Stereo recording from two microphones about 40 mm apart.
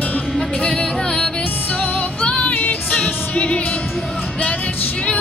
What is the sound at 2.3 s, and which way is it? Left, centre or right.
Music, left.